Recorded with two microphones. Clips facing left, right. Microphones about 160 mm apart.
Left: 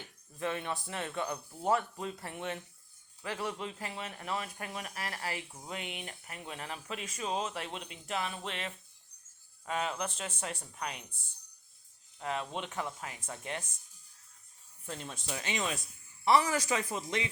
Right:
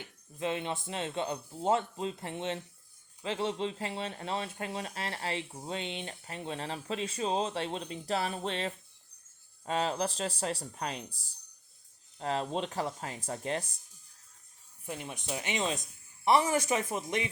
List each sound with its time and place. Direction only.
0.0 s speech: 20° right (ahead or behind)
14.8 s speech: 15° right (ahead or behind)